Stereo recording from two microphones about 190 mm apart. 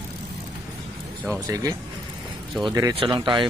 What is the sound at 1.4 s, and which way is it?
A man's voice, 15° right (ahead or behind).